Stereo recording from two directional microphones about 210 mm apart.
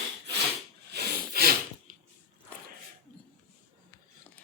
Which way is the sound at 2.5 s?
5° left (ahead or behind).